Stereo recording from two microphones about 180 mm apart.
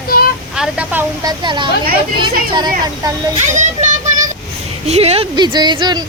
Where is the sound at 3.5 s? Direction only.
40° right (ahead or behind).